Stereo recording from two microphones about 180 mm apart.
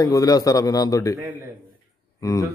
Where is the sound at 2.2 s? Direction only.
20° left (ahead or behind).